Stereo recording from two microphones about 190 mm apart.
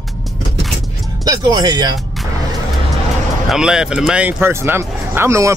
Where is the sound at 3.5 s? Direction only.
5° right (ahead or behind).